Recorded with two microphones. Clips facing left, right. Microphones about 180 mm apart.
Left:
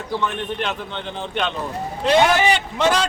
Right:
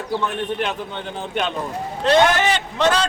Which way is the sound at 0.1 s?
10° right (ahead or behind).